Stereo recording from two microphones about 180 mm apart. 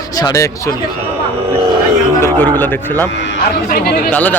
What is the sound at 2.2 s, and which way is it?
Speech, 10° left (ahead or behind).